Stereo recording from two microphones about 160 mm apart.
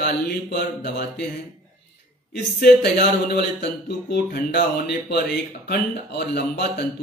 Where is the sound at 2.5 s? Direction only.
75° left (ahead or behind).